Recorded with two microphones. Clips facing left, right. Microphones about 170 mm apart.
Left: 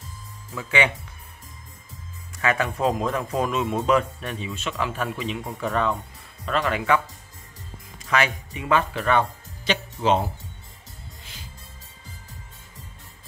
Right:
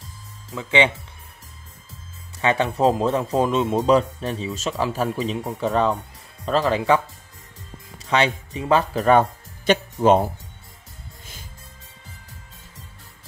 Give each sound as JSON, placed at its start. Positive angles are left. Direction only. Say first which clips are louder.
{"t": 0.6, "sound": "speech", "louder": "right 4 dB", "side_deg": -25}
{"t": 2.4, "sound": "speech", "louder": "right 4 dB", "side_deg": -30}
{"t": 8.0, "sound": "music", "louder": "right 3 dB", "side_deg": -30}
{"t": 8.5, "sound": "speech", "louder": "right 3 dB", "side_deg": -35}
{"t": 9.7, "sound": "speech", "louder": "right 6 dB", "side_deg": -50}